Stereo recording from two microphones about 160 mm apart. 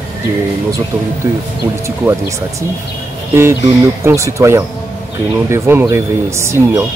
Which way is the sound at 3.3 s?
15° right (ahead or behind).